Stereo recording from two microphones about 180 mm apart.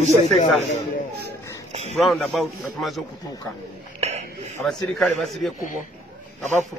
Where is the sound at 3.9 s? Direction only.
35° right (ahead or behind).